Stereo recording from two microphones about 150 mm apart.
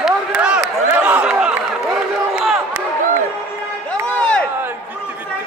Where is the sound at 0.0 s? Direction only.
5° right (ahead or behind).